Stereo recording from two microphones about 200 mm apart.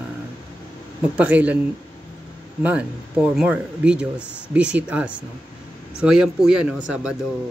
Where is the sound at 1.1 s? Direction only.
5° right (ahead or behind).